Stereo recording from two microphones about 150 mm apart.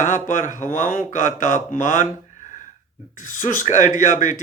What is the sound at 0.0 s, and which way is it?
Speech, 60° left (ahead or behind).